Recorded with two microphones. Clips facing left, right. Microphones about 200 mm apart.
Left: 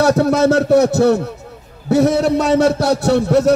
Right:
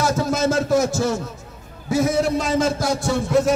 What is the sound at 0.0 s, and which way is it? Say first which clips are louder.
A man's voice: left 7 dB; 65° left (ahead or behind).